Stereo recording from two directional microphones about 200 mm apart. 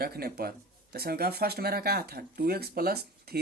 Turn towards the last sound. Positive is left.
turn(degrees=-50)  # may be behind; listen again after turning